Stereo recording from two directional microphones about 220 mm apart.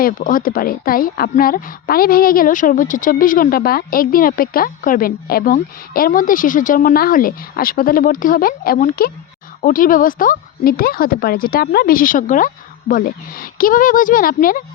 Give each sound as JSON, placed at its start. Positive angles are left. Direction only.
{"t": 0.0, "sound": "a woman's voice", "side_deg": 40}